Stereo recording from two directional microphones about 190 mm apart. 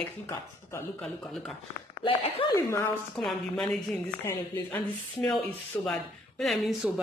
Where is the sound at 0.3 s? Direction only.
15° left (ahead or behind).